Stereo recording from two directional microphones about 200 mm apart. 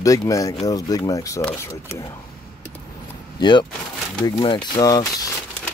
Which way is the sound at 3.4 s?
20° left (ahead or behind).